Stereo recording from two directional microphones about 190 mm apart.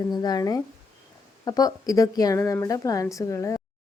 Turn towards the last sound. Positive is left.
turn(degrees=15)  # may be behind; listen again after turning